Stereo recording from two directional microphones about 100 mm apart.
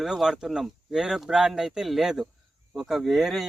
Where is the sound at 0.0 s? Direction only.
5° right (ahead or behind).